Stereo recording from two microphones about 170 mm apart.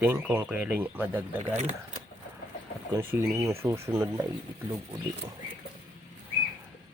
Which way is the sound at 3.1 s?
15° right (ahead or behind).